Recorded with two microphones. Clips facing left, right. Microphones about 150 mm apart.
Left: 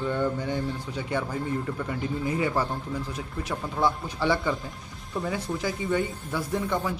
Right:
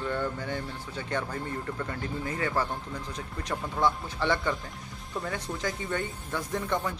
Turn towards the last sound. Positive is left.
turn(degrees=5)  # may be behind; listen again after turning